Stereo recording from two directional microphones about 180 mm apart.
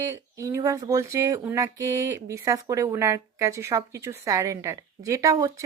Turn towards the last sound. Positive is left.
turn(degrees=-20)  # may be behind; listen again after turning